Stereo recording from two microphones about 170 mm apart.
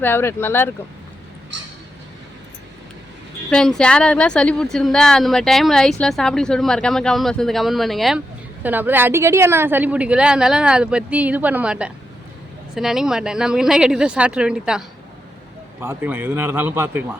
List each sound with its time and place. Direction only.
0.0 s speech: 15° left (ahead or behind)
3.5 s a woman's voice: 5° left (ahead or behind)
8.6 s a woman's voice: 10° right (ahead or behind)